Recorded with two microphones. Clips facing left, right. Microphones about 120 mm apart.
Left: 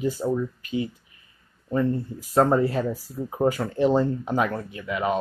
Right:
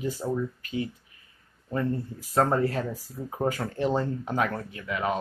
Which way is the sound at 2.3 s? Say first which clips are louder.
Left 4 dB; 15° left (ahead or behind).